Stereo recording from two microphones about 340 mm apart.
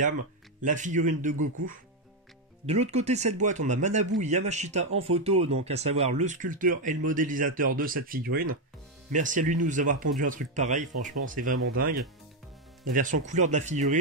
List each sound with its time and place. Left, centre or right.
0.6 s speech: right
2.6 s speech: centre